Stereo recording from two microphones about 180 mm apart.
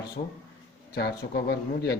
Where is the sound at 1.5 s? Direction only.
65° left (ahead or behind).